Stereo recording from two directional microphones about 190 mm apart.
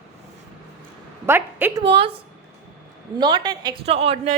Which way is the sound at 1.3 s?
10° right (ahead or behind).